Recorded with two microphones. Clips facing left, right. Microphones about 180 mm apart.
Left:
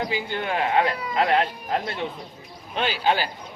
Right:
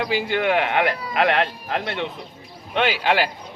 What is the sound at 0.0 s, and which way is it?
Speech, 80° right.